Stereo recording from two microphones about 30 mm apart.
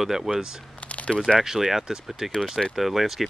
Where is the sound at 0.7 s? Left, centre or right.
Left.